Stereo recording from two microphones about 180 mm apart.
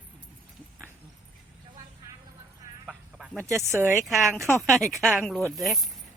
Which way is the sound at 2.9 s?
5° right (ahead or behind).